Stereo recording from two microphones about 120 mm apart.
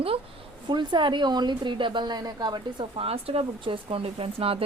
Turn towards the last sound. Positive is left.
turn(degrees=-50)  # may be behind; listen again after turning